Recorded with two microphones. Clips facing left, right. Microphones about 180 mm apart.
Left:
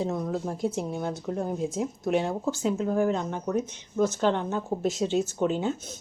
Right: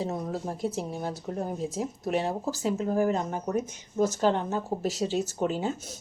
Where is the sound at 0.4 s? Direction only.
Centre (ahead or behind).